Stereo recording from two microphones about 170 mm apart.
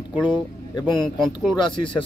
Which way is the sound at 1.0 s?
Centre (ahead or behind).